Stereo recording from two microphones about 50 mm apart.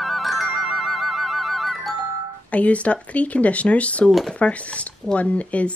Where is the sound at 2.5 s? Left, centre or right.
Left.